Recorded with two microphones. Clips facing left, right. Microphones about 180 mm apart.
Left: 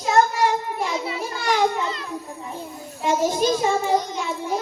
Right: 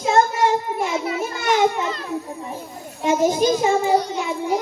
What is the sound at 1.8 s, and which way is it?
Speech, 40° right (ahead or behind).